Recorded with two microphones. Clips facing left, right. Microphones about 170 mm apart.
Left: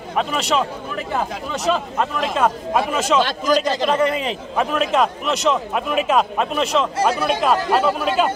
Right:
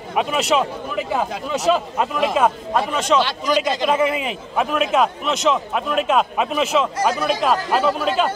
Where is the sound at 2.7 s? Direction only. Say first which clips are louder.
Even; 5° left (ahead or behind).